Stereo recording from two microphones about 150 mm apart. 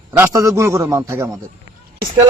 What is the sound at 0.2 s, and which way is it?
Speech, 20° right (ahead or behind).